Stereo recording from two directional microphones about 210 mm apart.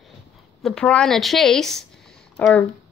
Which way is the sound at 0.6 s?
Centre (ahead or behind).